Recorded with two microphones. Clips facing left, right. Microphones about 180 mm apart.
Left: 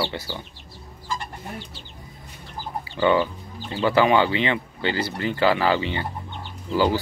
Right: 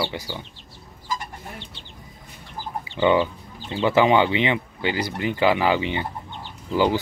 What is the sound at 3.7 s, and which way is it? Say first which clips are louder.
Speech: right 1 dB; 20° right (ahead or behind).